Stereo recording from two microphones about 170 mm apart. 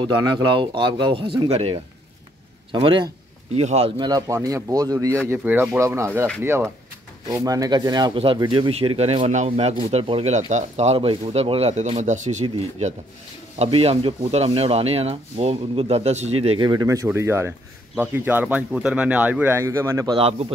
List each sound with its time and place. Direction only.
0.0 s speech: 25° right (ahead or behind)
3.5 s speech: 40° right (ahead or behind)
4.0 s speech: 20° right (ahead or behind)
20.2 s speech: 35° right (ahead or behind)